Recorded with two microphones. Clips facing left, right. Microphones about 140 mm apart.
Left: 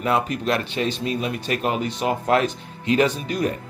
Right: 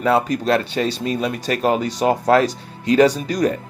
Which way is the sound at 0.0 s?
35° right (ahead or behind).